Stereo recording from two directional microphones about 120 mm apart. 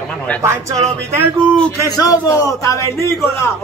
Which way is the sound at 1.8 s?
30° left (ahead or behind).